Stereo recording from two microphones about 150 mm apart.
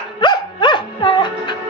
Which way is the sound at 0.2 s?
30° left (ahead or behind).